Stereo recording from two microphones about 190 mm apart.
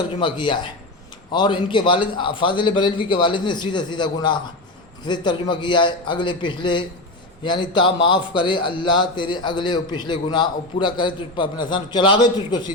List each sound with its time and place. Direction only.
0.2 s a man's voice: 25° left (ahead or behind)